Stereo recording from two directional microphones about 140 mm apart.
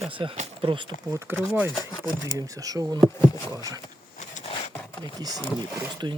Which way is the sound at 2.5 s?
25° right (ahead or behind).